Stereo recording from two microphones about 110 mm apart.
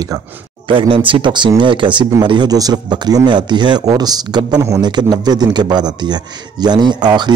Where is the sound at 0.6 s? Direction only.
55° right (ahead or behind).